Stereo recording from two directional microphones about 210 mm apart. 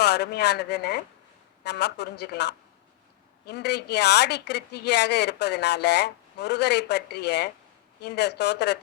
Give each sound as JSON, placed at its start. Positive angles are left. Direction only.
{"t": 0.0, "sound": "a woman's voice", "side_deg": 50}